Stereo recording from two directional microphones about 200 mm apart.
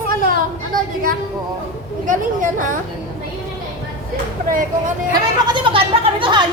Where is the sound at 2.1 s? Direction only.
40° right (ahead or behind).